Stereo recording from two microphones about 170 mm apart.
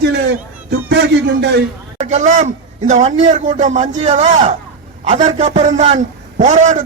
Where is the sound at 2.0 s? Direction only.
40° right (ahead or behind).